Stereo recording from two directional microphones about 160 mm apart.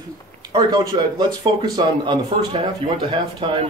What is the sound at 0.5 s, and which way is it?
A man's voice, 25° right (ahead or behind).